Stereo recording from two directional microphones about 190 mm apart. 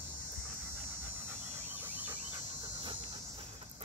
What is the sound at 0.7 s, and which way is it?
Dog, 10° right (ahead or behind).